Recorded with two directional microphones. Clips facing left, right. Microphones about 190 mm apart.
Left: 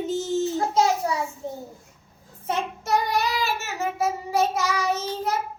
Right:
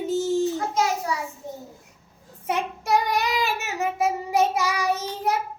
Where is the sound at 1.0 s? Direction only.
30° left (ahead or behind).